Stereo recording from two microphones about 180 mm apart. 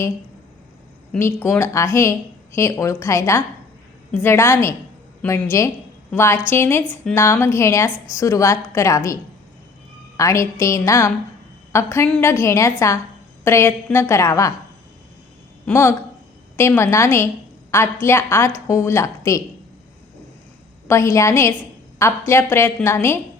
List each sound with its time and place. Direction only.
1.1 s a woman's voice: 15° left (ahead or behind)
10.2 s a woman's voice: 15° left (ahead or behind)
15.6 s a woman's voice: 15° left (ahead or behind)
20.8 s a woman's voice: 15° left (ahead or behind)